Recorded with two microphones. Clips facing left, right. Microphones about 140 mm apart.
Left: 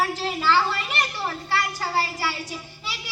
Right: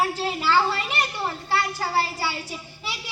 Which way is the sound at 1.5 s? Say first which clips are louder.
Right 1 dB; 25° right (ahead or behind).